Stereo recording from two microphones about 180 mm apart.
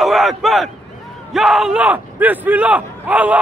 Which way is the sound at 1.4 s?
Centre (ahead or behind).